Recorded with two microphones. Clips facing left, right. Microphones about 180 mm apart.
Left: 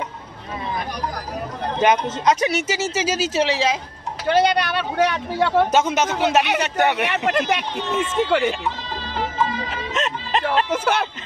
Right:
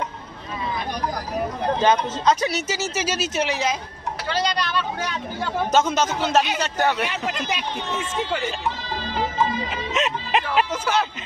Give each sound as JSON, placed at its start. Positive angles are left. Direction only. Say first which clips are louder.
{"t": 1.8, "sound": "speech", "louder": "left 3 dB", "side_deg": 15}
{"t": 4.3, "sound": "speech", "louder": "left 7 dB", "side_deg": 55}
{"t": 5.7, "sound": "speech", "louder": "left 1 dB", "side_deg": 15}
{"t": 7.0, "sound": "speech", "louder": "left 5 dB", "side_deg": 65}
{"t": 9.7, "sound": "music", "louder": "right 1 dB", "side_deg": -5}
{"t": 10.7, "sound": "speech", "louder": "left 2 dB", "side_deg": 60}